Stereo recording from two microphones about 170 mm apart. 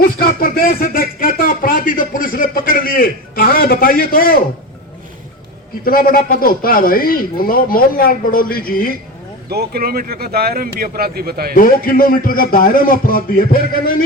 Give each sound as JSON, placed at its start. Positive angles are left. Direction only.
{"t": 0.0, "sound": "speech", "side_deg": 60}
{"t": 5.8, "sound": "speech", "side_deg": 60}
{"t": 9.5, "sound": "speech", "side_deg": -65}
{"t": 11.5, "sound": "speech", "side_deg": 55}